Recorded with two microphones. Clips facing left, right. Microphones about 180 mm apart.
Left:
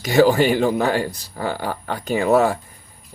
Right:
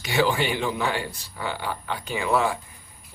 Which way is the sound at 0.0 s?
40° left (ahead or behind).